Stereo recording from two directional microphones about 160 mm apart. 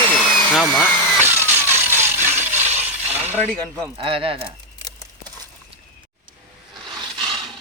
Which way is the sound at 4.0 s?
35° right (ahead or behind).